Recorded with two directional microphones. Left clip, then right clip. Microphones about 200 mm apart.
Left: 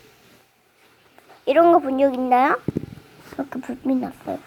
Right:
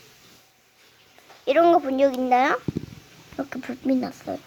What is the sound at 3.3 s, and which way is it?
A child's voice, 15° right (ahead or behind).